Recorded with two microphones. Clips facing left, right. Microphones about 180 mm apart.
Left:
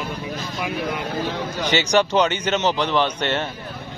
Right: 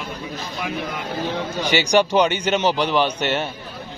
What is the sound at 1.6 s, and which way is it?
A man's voice, 10° right (ahead or behind).